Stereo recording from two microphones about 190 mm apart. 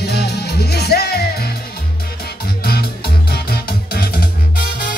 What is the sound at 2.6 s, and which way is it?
Music, 55° left (ahead or behind).